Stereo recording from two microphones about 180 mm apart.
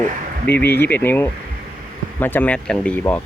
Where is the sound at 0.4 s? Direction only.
10° left (ahead or behind).